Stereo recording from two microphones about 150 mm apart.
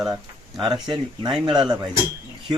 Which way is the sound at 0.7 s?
30° right (ahead or behind).